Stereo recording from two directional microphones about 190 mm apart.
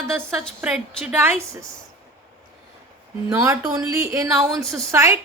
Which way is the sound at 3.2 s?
15° right (ahead or behind).